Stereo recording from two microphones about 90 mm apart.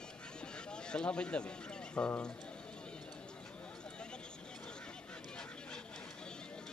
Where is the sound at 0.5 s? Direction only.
10° left (ahead or behind).